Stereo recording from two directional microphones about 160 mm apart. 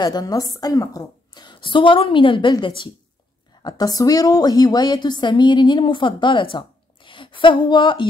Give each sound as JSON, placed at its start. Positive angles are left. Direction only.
{"t": 0.0, "sound": "a woman's voice", "side_deg": 25}